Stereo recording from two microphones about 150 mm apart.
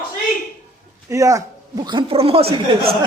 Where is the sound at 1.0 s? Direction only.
20° right (ahead or behind); by 2.4 s 40° right (ahead or behind).